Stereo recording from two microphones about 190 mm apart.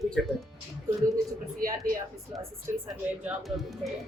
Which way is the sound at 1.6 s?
50° right (ahead or behind).